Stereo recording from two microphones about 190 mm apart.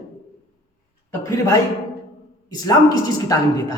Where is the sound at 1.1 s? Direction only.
15° left (ahead or behind).